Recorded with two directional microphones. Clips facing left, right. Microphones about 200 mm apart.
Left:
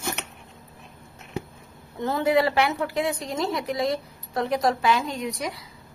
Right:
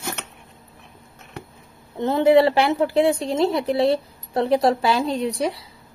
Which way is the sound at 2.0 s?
25° right (ahead or behind).